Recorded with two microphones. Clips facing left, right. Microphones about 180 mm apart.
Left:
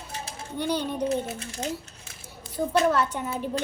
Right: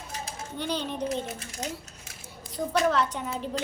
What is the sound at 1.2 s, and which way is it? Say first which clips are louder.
Speech: left 3 dB; 30° left (ahead or behind).